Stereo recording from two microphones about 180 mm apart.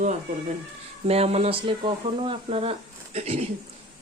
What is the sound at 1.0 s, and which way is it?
Speech, 35° right (ahead or behind).